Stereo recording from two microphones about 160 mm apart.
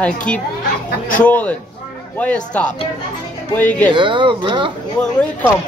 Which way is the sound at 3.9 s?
30° right (ahead or behind).